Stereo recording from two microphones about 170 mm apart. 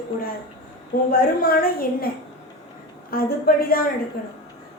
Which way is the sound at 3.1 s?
60° left (ahead or behind).